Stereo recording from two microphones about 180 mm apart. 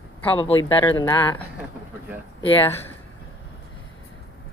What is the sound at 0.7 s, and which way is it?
Speech, 20° left (ahead or behind).